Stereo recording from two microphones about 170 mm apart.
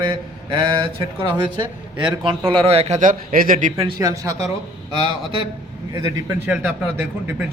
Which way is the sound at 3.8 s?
25° right (ahead or behind).